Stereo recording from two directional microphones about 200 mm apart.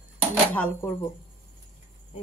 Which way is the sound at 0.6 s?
10° left (ahead or behind).